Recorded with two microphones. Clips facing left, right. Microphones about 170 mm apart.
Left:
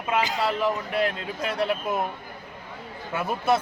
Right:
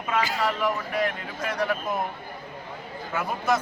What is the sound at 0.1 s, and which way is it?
Speech, 25° left (ahead or behind).